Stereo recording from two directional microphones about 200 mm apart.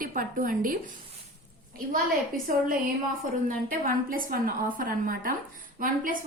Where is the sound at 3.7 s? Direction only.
45° right (ahead or behind).